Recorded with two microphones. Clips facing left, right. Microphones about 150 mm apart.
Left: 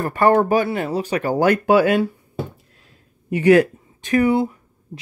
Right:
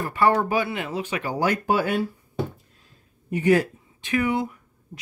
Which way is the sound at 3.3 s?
85° left.